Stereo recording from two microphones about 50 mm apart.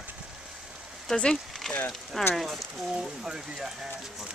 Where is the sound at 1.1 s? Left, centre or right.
Centre.